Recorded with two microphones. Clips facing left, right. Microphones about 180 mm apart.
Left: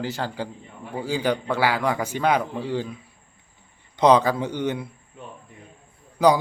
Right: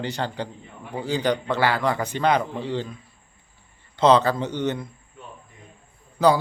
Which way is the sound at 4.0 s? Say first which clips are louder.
Even; 10° left (ahead or behind).